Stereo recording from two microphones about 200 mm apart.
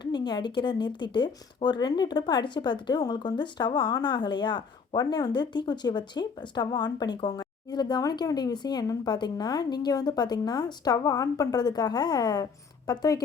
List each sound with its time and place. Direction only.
0.0 s speech: 20° left (ahead or behind)